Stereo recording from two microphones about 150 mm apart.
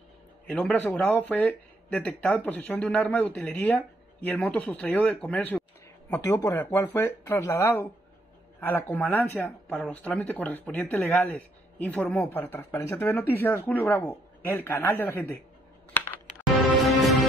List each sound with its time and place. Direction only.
0.5 s speech: 5° left (ahead or behind)
16.8 s music: centre (ahead or behind)